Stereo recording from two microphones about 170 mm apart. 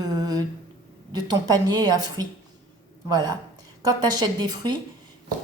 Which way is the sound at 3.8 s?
25° right (ahead or behind).